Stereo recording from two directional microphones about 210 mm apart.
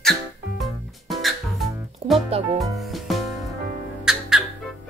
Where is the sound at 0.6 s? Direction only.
Centre (ahead or behind).